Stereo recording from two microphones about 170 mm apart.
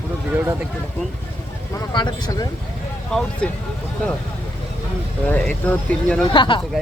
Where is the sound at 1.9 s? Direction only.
25° left (ahead or behind).